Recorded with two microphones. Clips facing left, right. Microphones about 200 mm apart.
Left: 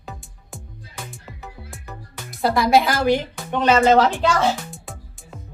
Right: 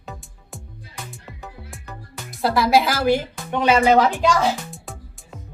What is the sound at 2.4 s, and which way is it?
A woman's voice, centre (ahead or behind).